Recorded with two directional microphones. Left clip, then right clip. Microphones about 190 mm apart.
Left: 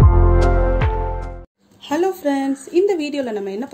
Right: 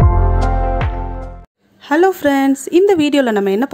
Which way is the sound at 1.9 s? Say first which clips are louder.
Right 7 dB; 30° right (ahead or behind).